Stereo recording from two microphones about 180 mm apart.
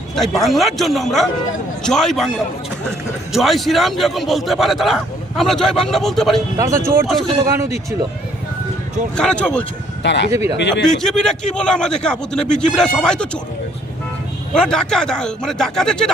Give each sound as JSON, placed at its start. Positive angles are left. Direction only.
{"t": 0.2, "sound": "a man's voice", "side_deg": 0}
{"t": 3.3, "sound": "a man's voice", "side_deg": 0}
{"t": 6.6, "sound": "speech", "side_deg": -15}
{"t": 7.1, "sound": "a man's voice", "side_deg": 0}
{"t": 9.1, "sound": "speech", "side_deg": 5}
{"t": 10.0, "sound": "speech", "side_deg": 75}
{"t": 10.3, "sound": "speech", "side_deg": -15}
{"t": 10.6, "sound": "a man's voice", "side_deg": 75}
{"t": 10.8, "sound": "a man's voice", "side_deg": 5}
{"t": 14.5, "sound": "a man's voice", "side_deg": 5}